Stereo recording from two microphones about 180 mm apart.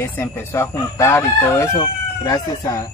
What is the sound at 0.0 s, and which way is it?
Speech, 15° left (ahead or behind).